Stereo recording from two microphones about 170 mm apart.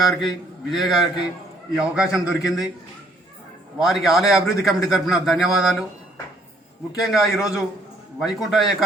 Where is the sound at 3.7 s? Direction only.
Centre (ahead or behind).